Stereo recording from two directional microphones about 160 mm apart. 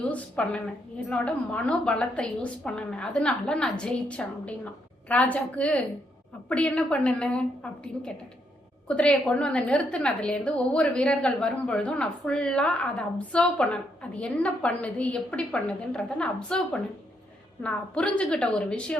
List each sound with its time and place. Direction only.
0.0 s a woman's voice: 5° left (ahead or behind)